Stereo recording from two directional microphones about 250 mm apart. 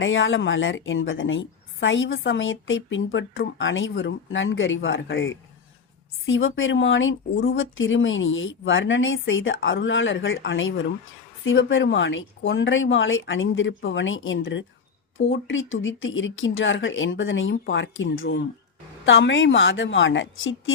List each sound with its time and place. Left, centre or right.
0.0 s a woman's voice: left